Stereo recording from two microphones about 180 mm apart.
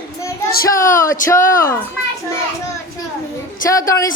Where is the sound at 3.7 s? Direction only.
20° left (ahead or behind).